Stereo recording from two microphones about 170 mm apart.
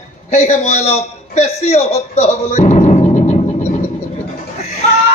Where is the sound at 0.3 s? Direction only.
40° left (ahead or behind).